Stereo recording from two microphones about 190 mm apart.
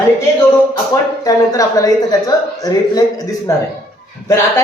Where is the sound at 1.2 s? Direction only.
20° left (ahead or behind).